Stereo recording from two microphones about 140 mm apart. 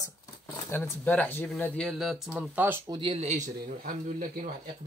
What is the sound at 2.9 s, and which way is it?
Speech, 40° right (ahead or behind).